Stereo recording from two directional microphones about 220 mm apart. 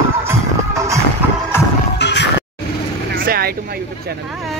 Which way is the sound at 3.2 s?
40° right (ahead or behind).